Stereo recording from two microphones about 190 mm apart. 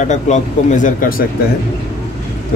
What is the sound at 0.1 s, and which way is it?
Speech, 40° left (ahead or behind).